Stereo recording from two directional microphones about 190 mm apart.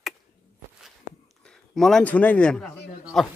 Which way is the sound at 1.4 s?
Centre (ahead or behind).